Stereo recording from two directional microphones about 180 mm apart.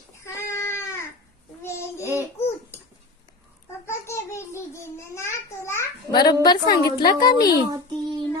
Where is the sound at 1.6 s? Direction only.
15° left (ahead or behind).